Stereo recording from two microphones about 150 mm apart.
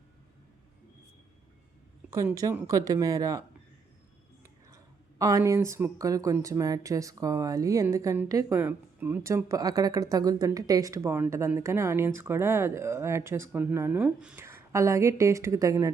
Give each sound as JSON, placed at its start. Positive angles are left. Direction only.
{"t": 2.0, "sound": "speech", "side_deg": -20}
{"t": 4.7, "sound": "speech", "side_deg": -20}